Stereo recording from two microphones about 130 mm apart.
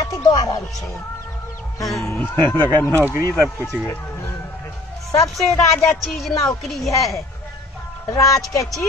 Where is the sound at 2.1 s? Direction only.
10° left (ahead or behind).